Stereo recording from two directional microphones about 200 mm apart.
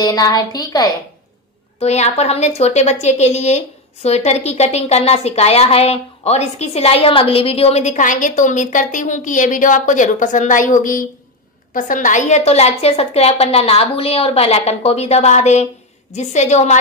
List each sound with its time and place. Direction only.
0.0 s a woman's voice: 20° left (ahead or behind)
1.8 s a woman's voice: 35° left (ahead or behind)